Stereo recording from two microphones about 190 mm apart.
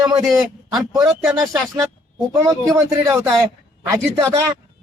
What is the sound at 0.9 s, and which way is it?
Speech, 20° right (ahead or behind).